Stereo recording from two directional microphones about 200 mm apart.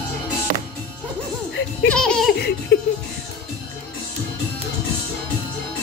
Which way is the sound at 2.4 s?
55° left (ahead or behind).